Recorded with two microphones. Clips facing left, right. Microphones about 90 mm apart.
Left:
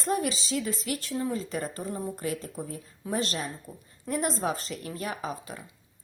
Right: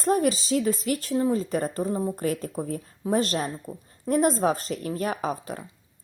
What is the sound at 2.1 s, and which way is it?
A woman's voice, 50° right (ahead or behind).